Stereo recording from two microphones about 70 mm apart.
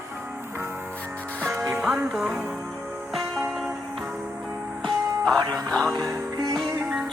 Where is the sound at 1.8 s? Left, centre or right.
Centre.